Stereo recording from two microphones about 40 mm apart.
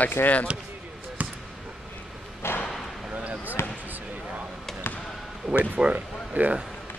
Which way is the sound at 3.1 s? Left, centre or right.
Right.